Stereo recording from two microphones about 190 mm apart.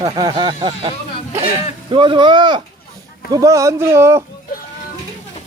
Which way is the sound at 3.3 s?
15° right (ahead or behind).